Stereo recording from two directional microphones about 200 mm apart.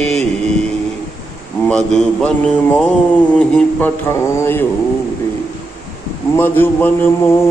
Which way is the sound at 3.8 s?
10° left (ahead or behind).